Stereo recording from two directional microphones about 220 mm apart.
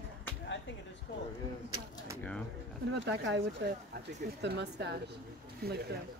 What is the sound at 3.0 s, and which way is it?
Speech, 55° right (ahead or behind).